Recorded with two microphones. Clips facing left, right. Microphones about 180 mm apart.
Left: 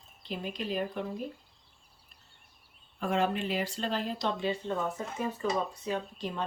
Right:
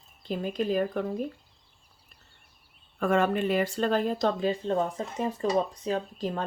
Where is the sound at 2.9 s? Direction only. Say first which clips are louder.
Right 5 dB; 50° right (ahead or behind).